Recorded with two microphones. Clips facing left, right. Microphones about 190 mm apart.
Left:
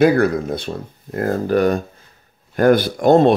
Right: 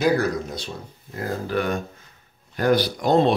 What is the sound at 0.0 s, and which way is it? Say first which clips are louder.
Speech: left 7 dB; 55° left (ahead or behind).